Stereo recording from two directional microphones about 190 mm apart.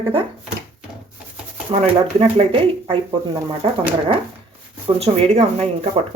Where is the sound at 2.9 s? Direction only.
25° right (ahead or behind).